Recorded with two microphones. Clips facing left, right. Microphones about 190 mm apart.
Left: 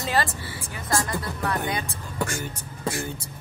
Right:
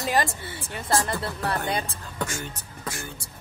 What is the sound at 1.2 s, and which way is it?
Speech, 30° right (ahead or behind).